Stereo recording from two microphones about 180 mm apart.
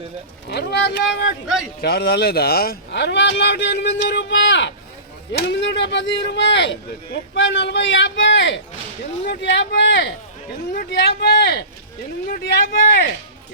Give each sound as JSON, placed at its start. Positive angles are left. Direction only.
{"t": 0.4, "sound": "speech", "side_deg": 65}
{"t": 1.8, "sound": "speech", "side_deg": 60}
{"t": 5.3, "sound": "speech", "side_deg": 70}